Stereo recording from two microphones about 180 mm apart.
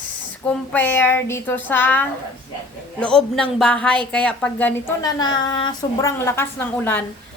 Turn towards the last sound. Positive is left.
turn(degrees=10)  # may be behind; listen again after turning